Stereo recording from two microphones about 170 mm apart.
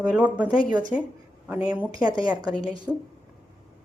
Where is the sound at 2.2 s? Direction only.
25° right (ahead or behind).